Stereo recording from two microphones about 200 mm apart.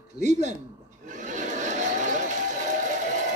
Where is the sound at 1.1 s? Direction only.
40° right (ahead or behind).